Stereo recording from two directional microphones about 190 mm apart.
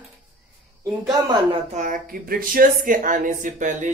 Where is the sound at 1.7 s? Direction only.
45° right (ahead or behind).